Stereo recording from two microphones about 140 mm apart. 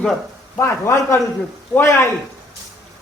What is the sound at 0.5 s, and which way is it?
A man's voice, 20° left (ahead or behind).